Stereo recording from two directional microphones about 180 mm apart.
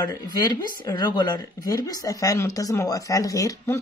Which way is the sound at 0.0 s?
20° left (ahead or behind).